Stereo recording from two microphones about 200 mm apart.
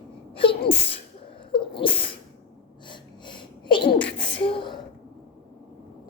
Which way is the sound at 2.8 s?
25° left (ahead or behind).